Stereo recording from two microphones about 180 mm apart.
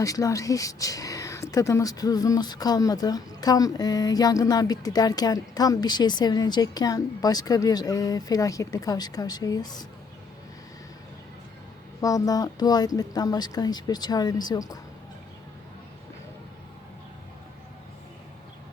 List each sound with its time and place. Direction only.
0.0 s speech: 20° left (ahead or behind)
11.9 s speech: 20° left (ahead or behind)